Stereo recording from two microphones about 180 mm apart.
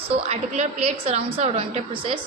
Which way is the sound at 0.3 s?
35° right (ahead or behind).